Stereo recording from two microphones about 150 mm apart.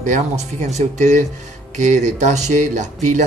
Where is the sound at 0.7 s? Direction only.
50° right (ahead or behind).